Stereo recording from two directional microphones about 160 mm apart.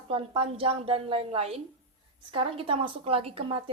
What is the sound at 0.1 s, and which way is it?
A woman's voice, 35° right (ahead or behind).